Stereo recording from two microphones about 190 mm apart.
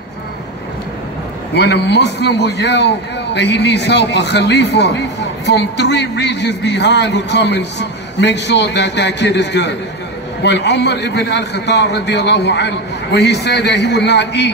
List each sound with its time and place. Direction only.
1.5 s a man's voice: 60° left (ahead or behind)